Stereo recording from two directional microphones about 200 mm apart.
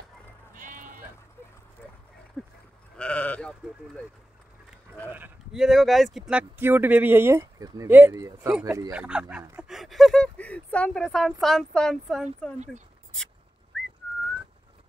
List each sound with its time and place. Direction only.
0.6 s sheep: 40° right (ahead or behind)
2.4 s livestock: 5° left (ahead or behind)
3.0 s speech: 5° left (ahead or behind)
5.1 s speech: 5° right (ahead or behind)
9.6 s a sound: centre (ahead or behind)
11.4 s speech: centre (ahead or behind)